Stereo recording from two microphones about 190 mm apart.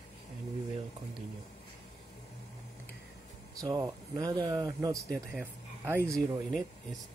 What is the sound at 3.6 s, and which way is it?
Speech, 20° right (ahead or behind).